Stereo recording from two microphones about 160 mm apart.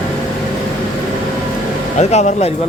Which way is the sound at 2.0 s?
45° left (ahead or behind).